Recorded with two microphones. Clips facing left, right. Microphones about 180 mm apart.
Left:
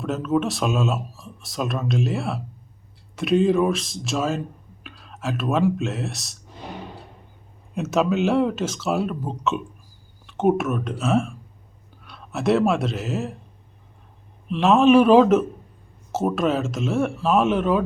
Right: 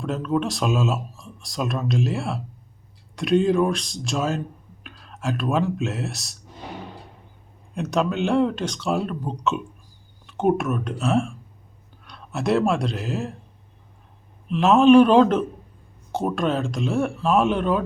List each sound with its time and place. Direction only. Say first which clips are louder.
0.0 s speech: left 1 dB; centre (ahead or behind)
7.7 s speech: left 2 dB; 5° left (ahead or behind)
14.5 s speech: right 1 dB; centre (ahead or behind)